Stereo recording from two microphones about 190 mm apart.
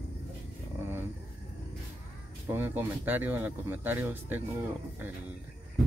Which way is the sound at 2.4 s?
10° right (ahead or behind).